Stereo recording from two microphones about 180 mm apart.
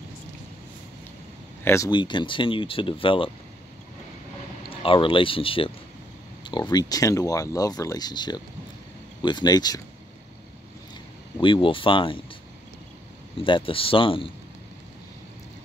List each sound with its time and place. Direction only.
1.6 s speech: 15° left (ahead or behind)
1.9 s speech: 25° left (ahead or behind)
4.6 s speech: 30° left (ahead or behind)
11.3 s speech: 25° left (ahead or behind)
13.4 s speech: 30° left (ahead or behind)